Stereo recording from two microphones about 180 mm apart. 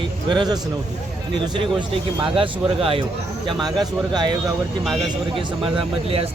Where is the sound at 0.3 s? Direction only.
25° right (ahead or behind).